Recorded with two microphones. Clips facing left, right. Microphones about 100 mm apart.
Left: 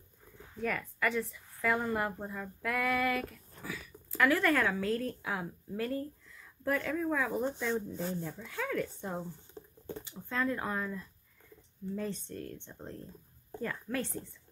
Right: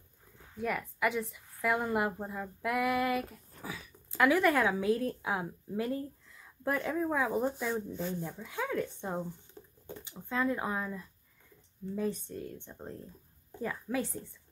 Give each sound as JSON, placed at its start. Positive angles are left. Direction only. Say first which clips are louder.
{"t": 0.6, "sound": "a woman's voice", "louder": "right 1 dB", "side_deg": -10}
{"t": 9.6, "sound": "patter", "louder": "left 3 dB", "side_deg": 30}
{"t": 10.0, "sound": "speech", "louder": "right 2 dB", "side_deg": -15}